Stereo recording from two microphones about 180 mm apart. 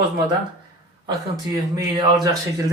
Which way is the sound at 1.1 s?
20° right (ahead or behind).